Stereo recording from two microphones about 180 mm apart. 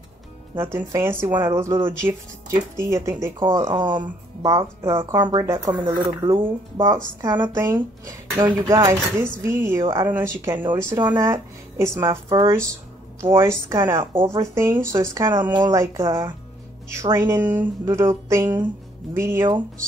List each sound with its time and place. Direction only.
0.7 s speech: 15° right (ahead or behind)
3.6 s speech: 25° right (ahead or behind)
7.4 s speech: 10° right (ahead or behind)
16.0 s speech: 30° right (ahead or behind)
16.9 s speech: 15° right (ahead or behind)